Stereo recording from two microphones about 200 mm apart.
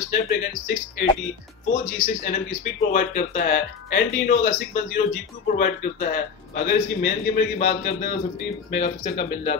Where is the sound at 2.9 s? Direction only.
45° left (ahead or behind).